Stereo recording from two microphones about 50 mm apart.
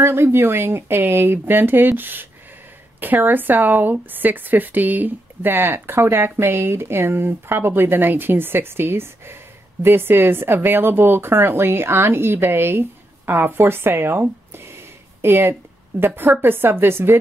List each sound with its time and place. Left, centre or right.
0.0 s speech: right
14.5 s a sound: right
16.2 s speech: right